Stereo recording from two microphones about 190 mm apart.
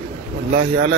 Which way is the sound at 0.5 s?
75° right (ahead or behind).